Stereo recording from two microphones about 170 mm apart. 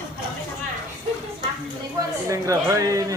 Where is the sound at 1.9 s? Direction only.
20° right (ahead or behind).